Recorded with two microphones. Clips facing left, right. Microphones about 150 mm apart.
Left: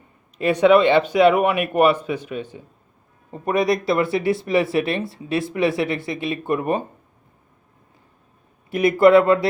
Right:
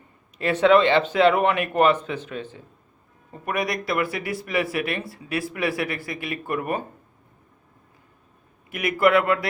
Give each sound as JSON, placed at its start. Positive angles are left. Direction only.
{"t": 0.3, "sound": "speech", "side_deg": 15}
{"t": 3.3, "sound": "speech", "side_deg": 25}
{"t": 8.7, "sound": "speech", "side_deg": 30}